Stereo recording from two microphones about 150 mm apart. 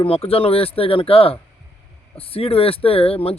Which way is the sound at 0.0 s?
40° left (ahead or behind).